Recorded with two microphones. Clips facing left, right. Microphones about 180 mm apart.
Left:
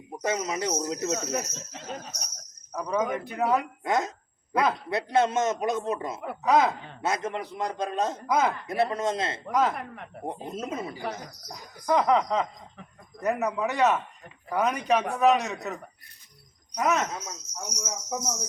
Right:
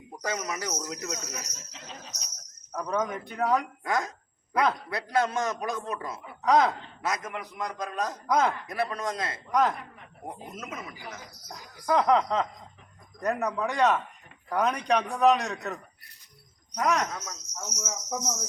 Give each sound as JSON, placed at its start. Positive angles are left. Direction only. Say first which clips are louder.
{"t": 0.2, "sound": "a man's voice", "louder": "left 4 dB", "side_deg": 25}
{"t": 1.9, "sound": "neigh", "louder": "left 8 dB", "side_deg": 50}
{"t": 2.7, "sound": "speech", "louder": "left 2 dB", "side_deg": 10}
{"t": 3.8, "sound": "a man's voice", "louder": "left 3 dB", "side_deg": 25}
{"t": 6.4, "sound": "speech", "louder": "even", "side_deg": 5}
{"t": 7.0, "sound": "a man's voice", "louder": "left 4 dB", "side_deg": 30}
{"t": 8.3, "sound": "speech", "louder": "right 1 dB", "side_deg": 5}
{"t": 8.6, "sound": "a man's voice", "louder": "left 5 dB", "side_deg": 25}
{"t": 9.5, "sound": "speech", "louder": "even", "side_deg": 5}
{"t": 9.7, "sound": "speech", "louder": "left 7 dB", "side_deg": 65}
{"t": 10.2, "sound": "a man's voice", "louder": "left 6 dB", "side_deg": 30}
{"t": 11.5, "sound": "speech", "louder": "left 1 dB", "side_deg": 0}
{"t": 16.7, "sound": "speech", "louder": "left 1 dB", "side_deg": 5}